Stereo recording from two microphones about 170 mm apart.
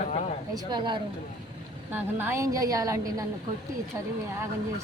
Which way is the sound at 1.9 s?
10° right (ahead or behind).